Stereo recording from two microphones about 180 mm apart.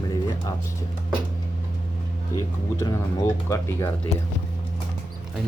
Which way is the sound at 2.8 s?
20° left (ahead or behind).